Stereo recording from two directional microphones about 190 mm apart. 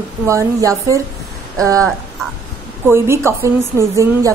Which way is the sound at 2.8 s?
15° right (ahead or behind).